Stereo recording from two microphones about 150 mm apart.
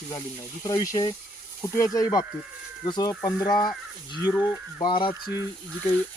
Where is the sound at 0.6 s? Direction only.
25° left (ahead or behind).